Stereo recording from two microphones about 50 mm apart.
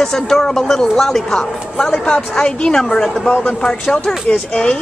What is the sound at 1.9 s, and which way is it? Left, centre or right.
A woman's voice, centre.